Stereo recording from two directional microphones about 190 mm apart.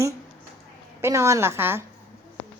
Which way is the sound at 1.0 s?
15° right (ahead or behind).